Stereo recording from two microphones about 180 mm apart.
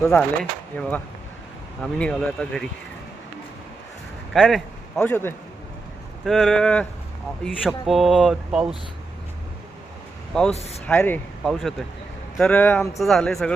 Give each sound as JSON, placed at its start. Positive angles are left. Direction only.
{"t": 0.0, "sound": "speech", "side_deg": 5}
{"t": 4.4, "sound": "speech", "side_deg": 0}
{"t": 4.9, "sound": "speech", "side_deg": 10}
{"t": 6.2, "sound": "speech", "side_deg": 0}
{"t": 10.5, "sound": "speech", "side_deg": 35}
{"t": 10.8, "sound": "speech", "side_deg": 10}
{"t": 13.0, "sound": "speech", "side_deg": 0}